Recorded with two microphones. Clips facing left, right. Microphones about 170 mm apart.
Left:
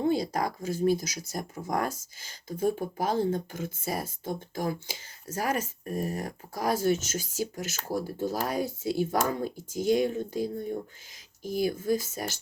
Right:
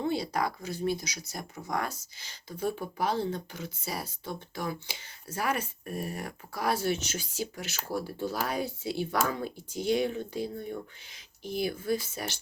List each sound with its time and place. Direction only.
0.0 s speech: 45° left (ahead or behind)